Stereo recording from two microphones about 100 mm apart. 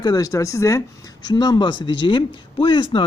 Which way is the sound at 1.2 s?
45° left (ahead or behind).